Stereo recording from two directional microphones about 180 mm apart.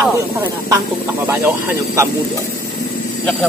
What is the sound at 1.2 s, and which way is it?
Speech, 15° right (ahead or behind).